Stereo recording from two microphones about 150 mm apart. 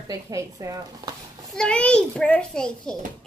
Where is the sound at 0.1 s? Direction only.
20° right (ahead or behind).